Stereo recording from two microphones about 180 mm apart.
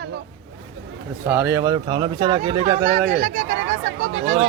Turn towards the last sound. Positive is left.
turn(degrees=-45)  # may be behind; listen again after turning